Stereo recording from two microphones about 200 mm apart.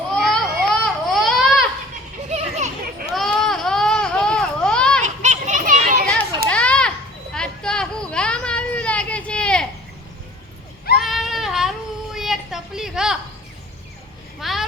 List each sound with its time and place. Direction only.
0.1 s baby cry: centre (ahead or behind)
2.3 s children playing: 35° right (ahead or behind)
3.1 s baby cry: centre (ahead or behind)
5.0 s children playing: 35° right (ahead or behind)
6.5 s children playing: 5° left (ahead or behind)
7.3 s a sound: 5° left (ahead or behind)
10.9 s child singing: centre (ahead or behind)
12.1 s a sound: centre (ahead or behind)
14.3 s a sound: centre (ahead or behind)